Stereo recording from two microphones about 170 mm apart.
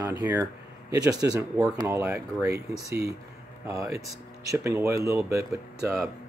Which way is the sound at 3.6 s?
15° right (ahead or behind).